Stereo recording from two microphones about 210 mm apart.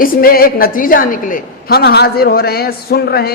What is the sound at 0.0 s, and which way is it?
A woman's voice, 45° left (ahead or behind).